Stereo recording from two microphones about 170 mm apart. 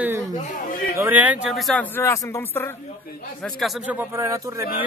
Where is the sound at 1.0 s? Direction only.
10° right (ahead or behind); by 2.7 s 15° left (ahead or behind).